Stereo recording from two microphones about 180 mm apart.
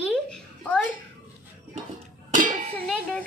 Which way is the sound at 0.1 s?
5° left (ahead or behind).